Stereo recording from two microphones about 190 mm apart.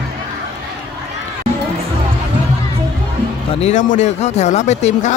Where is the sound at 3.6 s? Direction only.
40° left (ahead or behind).